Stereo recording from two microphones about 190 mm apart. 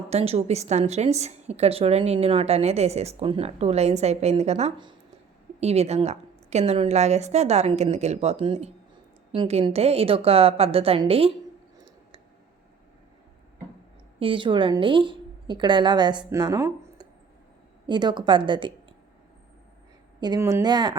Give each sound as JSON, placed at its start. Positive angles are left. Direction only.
{"t": 0.1, "sound": "a woman's voice", "side_deg": -35}
{"t": 14.2, "sound": "a woman's voice", "side_deg": -25}
{"t": 20.2, "sound": "a woman's voice", "side_deg": -20}